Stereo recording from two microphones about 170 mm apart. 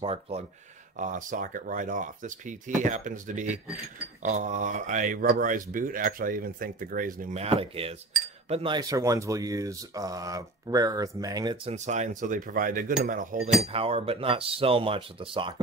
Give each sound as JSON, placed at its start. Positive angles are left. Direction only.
{"t": 0.0, "sound": "speech", "side_deg": -35}
{"t": 0.9, "sound": "speech", "side_deg": -50}
{"t": 7.4, "sound": "speech", "side_deg": -35}
{"t": 11.7, "sound": "speech", "side_deg": -40}
{"t": 13.7, "sound": "speech", "side_deg": -35}